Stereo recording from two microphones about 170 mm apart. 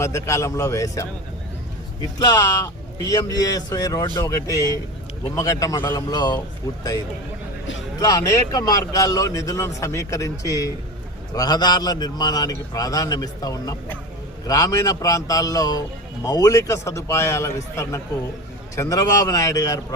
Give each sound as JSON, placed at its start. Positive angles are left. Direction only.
{"t": 0.0, "sound": "a man's voice", "side_deg": 15}
{"t": 8.0, "sound": "a man's voice", "side_deg": 25}